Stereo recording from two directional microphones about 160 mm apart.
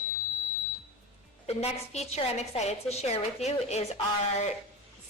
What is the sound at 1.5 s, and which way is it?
A woman's voice, 40° left (ahead or behind).